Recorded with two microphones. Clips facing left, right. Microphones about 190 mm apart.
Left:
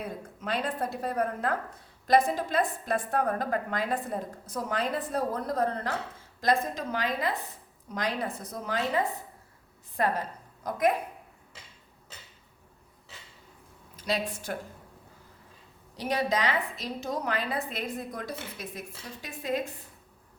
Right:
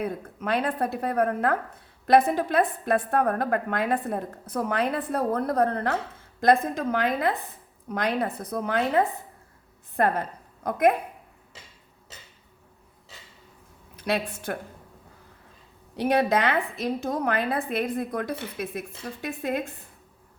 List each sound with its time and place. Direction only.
0.0 s a woman's voice: 60° right (ahead or behind)
13.9 s speech: 60° right (ahead or behind)
16.0 s a woman's voice: 60° right (ahead or behind)